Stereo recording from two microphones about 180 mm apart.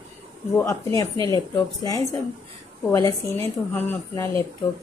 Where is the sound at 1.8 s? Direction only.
20° left (ahead or behind).